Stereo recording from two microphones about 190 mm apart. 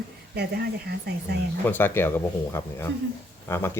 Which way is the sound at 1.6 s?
10° left (ahead or behind).